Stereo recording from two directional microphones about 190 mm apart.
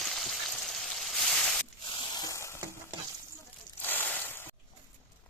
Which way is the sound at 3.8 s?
10° left (ahead or behind).